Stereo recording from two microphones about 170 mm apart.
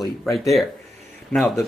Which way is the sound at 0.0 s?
Centre (ahead or behind).